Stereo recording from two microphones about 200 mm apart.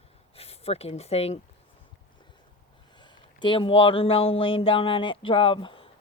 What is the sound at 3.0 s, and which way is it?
Speech, 25° left (ahead or behind).